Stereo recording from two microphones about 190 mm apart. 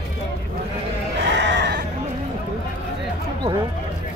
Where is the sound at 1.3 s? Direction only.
65° right (ahead or behind).